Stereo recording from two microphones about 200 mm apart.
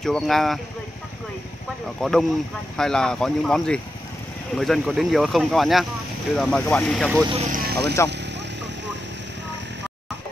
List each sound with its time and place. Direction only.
0.0 s speech: centre (ahead or behind)
2.0 s speech: centre (ahead or behind)
7.2 s speech: 30° right (ahead or behind)
7.5 s vehicle: 50° right (ahead or behind)